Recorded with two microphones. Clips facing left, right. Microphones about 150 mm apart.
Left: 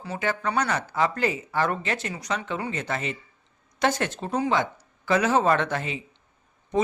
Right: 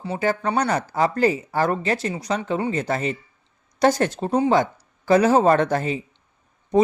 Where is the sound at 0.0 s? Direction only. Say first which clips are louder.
Right 5 dB; 30° right (ahead or behind).